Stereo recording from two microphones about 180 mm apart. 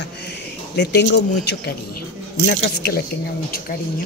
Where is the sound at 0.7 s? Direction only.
70° left (ahead or behind).